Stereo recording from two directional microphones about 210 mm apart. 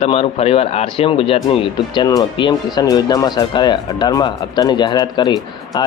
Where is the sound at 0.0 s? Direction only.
30° left (ahead or behind).